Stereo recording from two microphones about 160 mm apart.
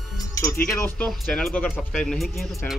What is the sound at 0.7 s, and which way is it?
Speech, 5° left (ahead or behind).